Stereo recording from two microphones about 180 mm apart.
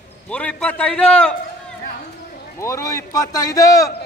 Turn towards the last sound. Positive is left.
turn(degrees=20)  # may be behind; listen again after turning